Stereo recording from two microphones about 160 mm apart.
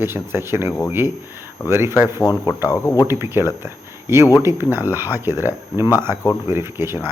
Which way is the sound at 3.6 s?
15° right (ahead or behind).